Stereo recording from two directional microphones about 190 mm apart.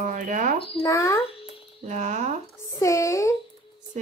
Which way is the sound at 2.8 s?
15° left (ahead or behind).